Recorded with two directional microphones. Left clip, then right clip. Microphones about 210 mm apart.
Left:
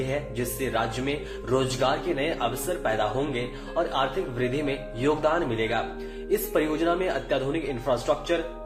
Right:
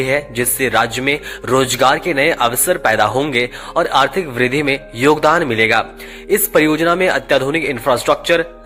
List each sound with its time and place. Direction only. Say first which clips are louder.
0.1 s a man's voice: right 12 dB; 45° right (ahead or behind)